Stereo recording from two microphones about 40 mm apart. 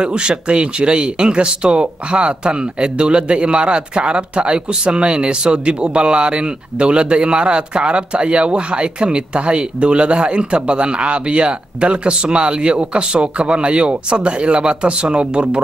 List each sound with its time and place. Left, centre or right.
0.0 s speech: right